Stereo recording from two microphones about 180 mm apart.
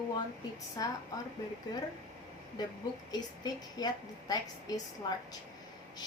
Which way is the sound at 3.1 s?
20° left (ahead or behind).